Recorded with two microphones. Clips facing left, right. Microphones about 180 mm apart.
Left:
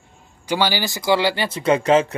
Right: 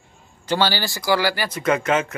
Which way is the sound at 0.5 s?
15° left (ahead or behind).